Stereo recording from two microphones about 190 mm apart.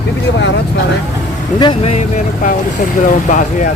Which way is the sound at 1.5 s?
25° left (ahead or behind).